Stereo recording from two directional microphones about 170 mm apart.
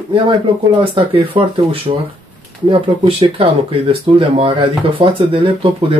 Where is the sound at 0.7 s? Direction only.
30° right (ahead or behind).